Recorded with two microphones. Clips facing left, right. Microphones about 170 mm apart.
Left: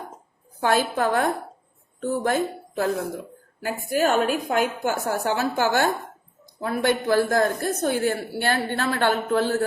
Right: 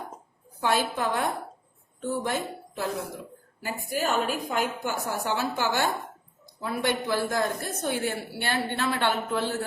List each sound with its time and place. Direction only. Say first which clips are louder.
0.6 s a woman's voice: left 4 dB; 45° left (ahead or behind)